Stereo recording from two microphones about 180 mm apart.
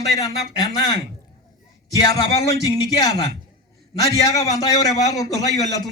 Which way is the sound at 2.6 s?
20° left (ahead or behind).